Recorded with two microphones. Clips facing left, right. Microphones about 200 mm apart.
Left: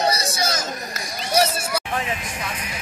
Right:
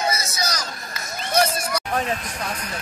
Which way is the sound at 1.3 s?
10° left (ahead or behind).